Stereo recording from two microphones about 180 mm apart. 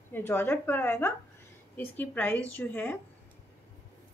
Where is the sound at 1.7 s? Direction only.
10° left (ahead or behind).